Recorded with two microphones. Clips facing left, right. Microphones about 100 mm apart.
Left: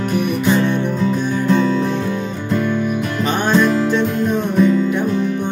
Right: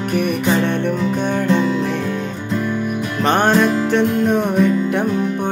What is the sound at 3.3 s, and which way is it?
Music, 60° right (ahead or behind).